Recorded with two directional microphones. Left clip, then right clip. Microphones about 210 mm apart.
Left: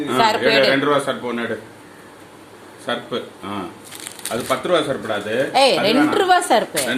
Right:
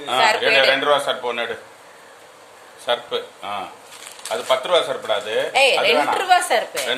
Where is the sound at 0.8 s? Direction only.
35° right (ahead or behind).